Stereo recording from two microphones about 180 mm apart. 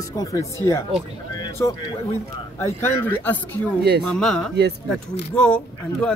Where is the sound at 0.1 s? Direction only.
20° left (ahead or behind).